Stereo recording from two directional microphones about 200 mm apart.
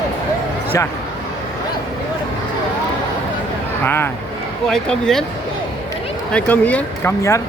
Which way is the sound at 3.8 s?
10° left (ahead or behind).